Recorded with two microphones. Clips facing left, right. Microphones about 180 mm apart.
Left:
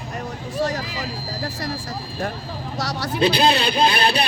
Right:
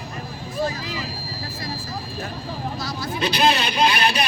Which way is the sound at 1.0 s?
75° left (ahead or behind).